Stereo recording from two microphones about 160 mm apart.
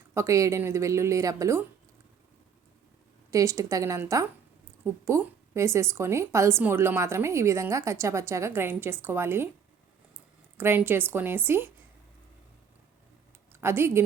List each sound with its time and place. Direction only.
0.1 s a woman's voice: 20° right (ahead or behind)
3.3 s a woman's voice: 20° right (ahead or behind)
10.6 s a woman's voice: 15° right (ahead or behind)
13.5 s speech: 15° right (ahead or behind)